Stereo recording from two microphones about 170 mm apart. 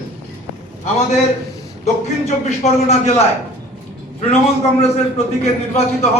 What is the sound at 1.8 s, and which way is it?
A man's voice, 40° left (ahead or behind).